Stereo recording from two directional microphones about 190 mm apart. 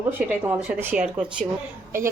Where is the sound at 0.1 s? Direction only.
10° right (ahead or behind).